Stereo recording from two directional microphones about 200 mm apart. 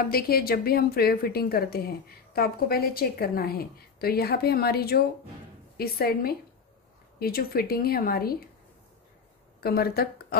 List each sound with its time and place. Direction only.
0.1 s a woman's voice: 50° left (ahead or behind)
9.6 s a woman's voice: 50° left (ahead or behind)